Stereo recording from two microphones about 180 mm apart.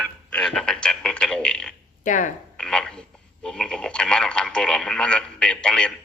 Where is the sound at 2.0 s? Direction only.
45° left (ahead or behind).